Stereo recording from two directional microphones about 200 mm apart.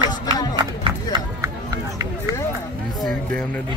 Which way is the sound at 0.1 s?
20° left (ahead or behind).